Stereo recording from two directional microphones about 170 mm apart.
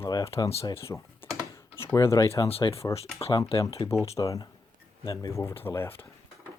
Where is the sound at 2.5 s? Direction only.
35° left (ahead or behind).